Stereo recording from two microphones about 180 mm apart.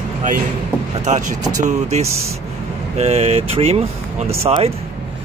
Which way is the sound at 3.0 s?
35° right (ahead or behind).